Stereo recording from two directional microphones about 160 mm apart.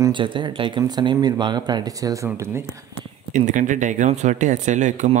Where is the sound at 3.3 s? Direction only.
50° right (ahead or behind).